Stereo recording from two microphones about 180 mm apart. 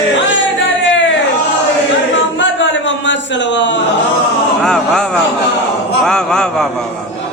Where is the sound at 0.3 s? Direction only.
90° left.